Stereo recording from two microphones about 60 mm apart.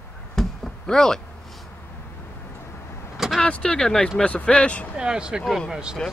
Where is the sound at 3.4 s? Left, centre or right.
Centre.